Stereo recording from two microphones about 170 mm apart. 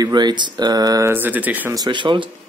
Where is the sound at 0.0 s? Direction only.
25° right (ahead or behind).